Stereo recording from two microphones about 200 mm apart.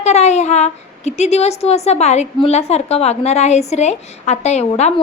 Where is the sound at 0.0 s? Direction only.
35° left (ahead or behind).